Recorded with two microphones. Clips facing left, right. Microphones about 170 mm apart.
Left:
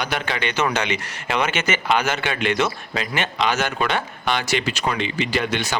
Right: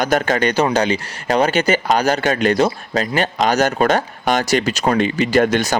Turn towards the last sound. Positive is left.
turn(degrees=-45)  # may be behind; listen again after turning